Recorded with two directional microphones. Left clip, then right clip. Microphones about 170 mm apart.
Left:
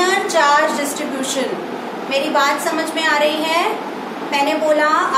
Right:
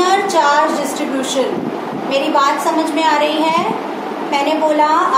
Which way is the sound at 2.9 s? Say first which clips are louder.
Even; 25° right (ahead or behind).